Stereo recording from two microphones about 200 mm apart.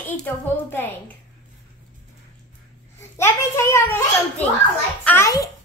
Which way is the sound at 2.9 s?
15° left (ahead or behind).